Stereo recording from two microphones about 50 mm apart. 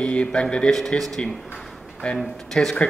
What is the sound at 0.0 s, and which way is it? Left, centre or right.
Speech, left.